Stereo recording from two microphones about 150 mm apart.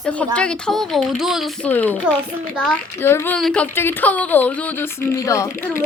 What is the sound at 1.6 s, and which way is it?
Speech, 10° left (ahead or behind).